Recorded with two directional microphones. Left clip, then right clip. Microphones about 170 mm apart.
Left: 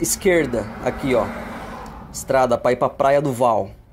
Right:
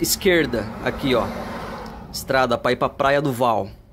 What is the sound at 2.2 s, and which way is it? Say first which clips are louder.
Speech: left 2 dB; 10° right (ahead or behind).